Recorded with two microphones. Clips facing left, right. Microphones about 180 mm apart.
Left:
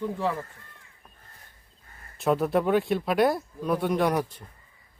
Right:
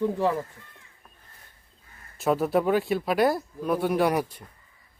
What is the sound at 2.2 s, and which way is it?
Speech, centre (ahead or behind).